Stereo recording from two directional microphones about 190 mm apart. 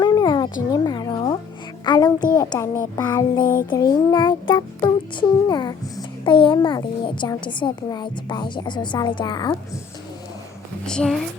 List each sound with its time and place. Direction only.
0.0 s a sound: 20° left (ahead or behind)
1.8 s child singing: 20° left (ahead or behind)
3.7 s a child's voice: 20° left (ahead or behind)
10.8 s speech: 5° left (ahead or behind)